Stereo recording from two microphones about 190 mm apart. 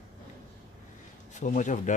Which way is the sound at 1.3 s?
40° left (ahead or behind).